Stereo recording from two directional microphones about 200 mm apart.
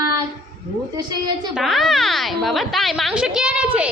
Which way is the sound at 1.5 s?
Centre (ahead or behind).